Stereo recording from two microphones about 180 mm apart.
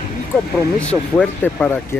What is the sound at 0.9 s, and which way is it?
Speech, 5° left (ahead or behind).